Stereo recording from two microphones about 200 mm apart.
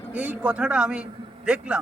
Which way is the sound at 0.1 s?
5° right (ahead or behind).